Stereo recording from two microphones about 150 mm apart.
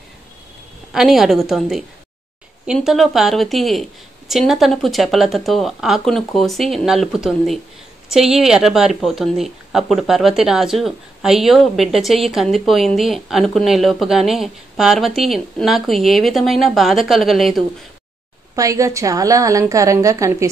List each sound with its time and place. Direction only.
0.9 s speech: centre (ahead or behind)
18.6 s a woman's voice: 20° right (ahead or behind)